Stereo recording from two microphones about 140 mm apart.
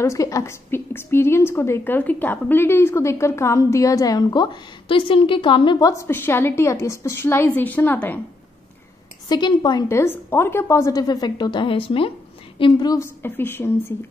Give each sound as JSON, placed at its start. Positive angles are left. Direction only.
{"t": 0.0, "sound": "a woman's voice", "side_deg": 20}
{"t": 5.9, "sound": "a woman's voice", "side_deg": 20}
{"t": 9.3, "sound": "a woman's voice", "side_deg": 30}